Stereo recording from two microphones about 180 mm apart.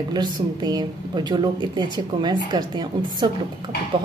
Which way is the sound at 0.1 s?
25° right (ahead or behind).